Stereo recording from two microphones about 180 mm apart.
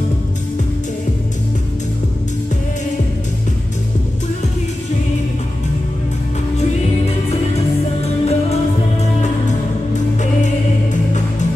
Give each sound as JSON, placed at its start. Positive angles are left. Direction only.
{"t": 7.1, "sound": "music", "side_deg": 35}
{"t": 10.4, "sound": "music", "side_deg": 40}